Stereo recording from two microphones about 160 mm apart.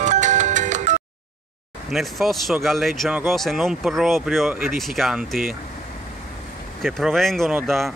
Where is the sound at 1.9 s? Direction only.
Centre (ahead or behind).